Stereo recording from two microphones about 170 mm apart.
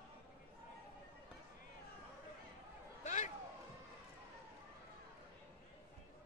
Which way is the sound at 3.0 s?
45° left (ahead or behind).